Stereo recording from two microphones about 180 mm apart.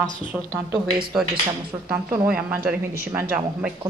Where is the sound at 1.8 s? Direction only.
10° right (ahead or behind).